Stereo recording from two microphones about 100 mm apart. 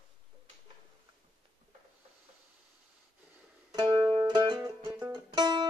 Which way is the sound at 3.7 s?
45° right (ahead or behind).